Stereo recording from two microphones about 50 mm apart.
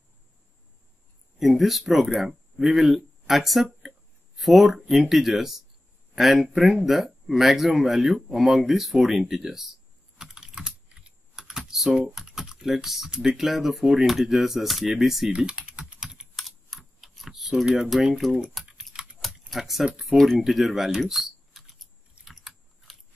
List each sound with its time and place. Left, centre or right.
1.4 s speech: centre
9.2 s typing: centre
12.6 s speech: centre
15.3 s speech: centre
15.8 s computer keyboard: centre
16.3 s computer keyboard: centre
17.8 s speech: centre
18.6 s typing: centre
19.8 s speech: centre
22.2 s chewing: centre